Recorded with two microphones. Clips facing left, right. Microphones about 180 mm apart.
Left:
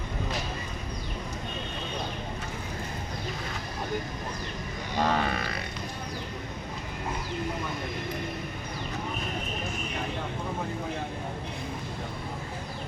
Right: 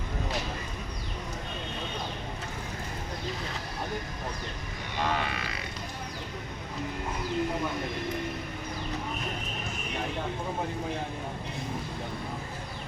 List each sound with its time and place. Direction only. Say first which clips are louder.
4.9 s grunt: left 4 dB; 40° left (ahead or behind)